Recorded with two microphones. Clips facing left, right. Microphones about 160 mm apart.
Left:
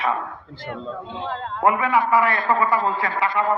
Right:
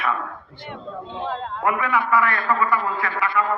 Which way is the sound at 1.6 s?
25° left (ahead or behind).